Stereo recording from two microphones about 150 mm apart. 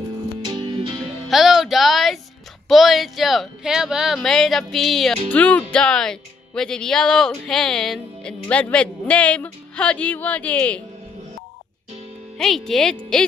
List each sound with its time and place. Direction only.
0.4 s music: 30° right (ahead or behind)
0.9 s music: centre (ahead or behind)
2.7 s speech: centre (ahead or behind)
12.4 s speech: centre (ahead or behind)